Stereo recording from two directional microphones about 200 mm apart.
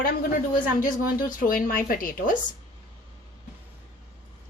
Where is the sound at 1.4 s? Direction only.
45° left (ahead or behind).